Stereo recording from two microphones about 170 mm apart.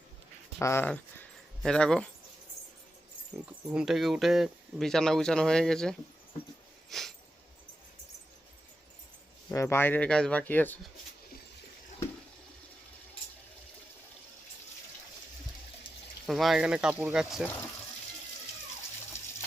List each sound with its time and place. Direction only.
0.6 s speech: 15° left (ahead or behind)
3.3 s speech: 15° right (ahead or behind)
3.7 s speech: 5° right (ahead or behind)
6.9 s a sound: centre (ahead or behind)
9.5 s speech: 15° left (ahead or behind)
16.2 s speech: centre (ahead or behind)